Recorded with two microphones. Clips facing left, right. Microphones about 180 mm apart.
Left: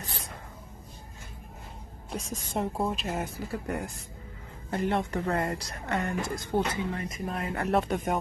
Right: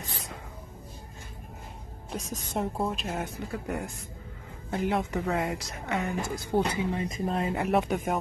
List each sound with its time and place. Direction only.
2.0 s speech: centre (ahead or behind)
7.0 s speech: 25° right (ahead or behind)
7.6 s speech: 5° right (ahead or behind)